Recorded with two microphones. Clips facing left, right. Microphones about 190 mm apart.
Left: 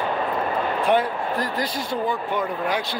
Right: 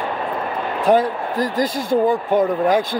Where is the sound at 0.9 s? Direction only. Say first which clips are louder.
Right 7 dB; 40° right (ahead or behind).